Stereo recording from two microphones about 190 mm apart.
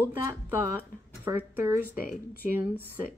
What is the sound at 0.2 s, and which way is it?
Speech, 10° right (ahead or behind).